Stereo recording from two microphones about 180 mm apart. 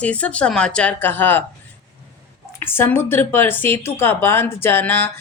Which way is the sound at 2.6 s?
10° left (ahead or behind).